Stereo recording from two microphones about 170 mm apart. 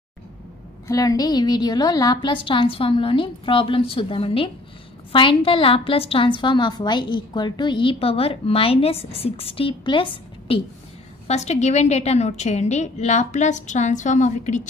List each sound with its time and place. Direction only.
0.8 s a woman's voice: 20° left (ahead or behind); by 14.7 s 45° left (ahead or behind)